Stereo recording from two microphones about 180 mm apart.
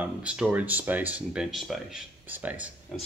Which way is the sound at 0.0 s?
5° right (ahead or behind).